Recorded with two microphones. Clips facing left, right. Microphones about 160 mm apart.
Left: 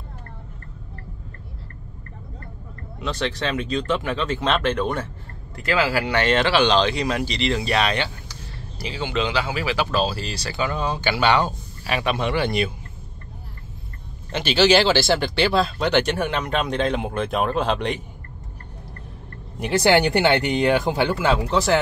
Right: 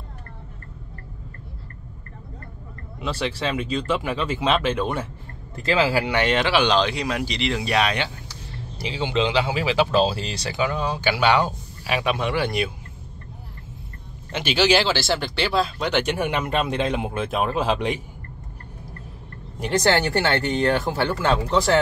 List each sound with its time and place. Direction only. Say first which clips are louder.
3.0 s speech: even; 10° right (ahead or behind)
5.6 s speech: right 1 dB; 20° right (ahead or behind)
8.7 s speech: right 2 dB; 25° right (ahead or behind)
10.6 s speech: right 1 dB; 10° right (ahead or behind)
14.3 s speech: left 2 dB; 10° right (ahead or behind)
19.6 s speech: left 3 dB; 10° left (ahead or behind)